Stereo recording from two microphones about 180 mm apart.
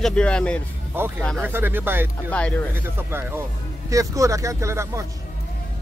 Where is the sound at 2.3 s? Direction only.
5° left (ahead or behind).